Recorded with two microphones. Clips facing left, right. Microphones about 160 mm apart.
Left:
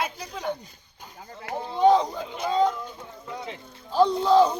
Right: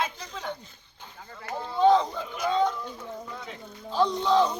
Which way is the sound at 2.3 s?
30° left (ahead or behind).